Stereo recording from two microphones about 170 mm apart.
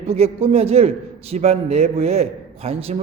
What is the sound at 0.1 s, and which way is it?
A man's voice, 35° right (ahead or behind).